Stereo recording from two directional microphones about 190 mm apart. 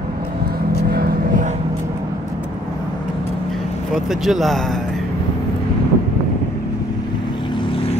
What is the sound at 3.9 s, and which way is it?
Speech, centre (ahead or behind).